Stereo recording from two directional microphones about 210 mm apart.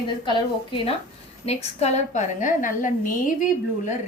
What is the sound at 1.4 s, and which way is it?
A woman's voice, 30° left (ahead or behind).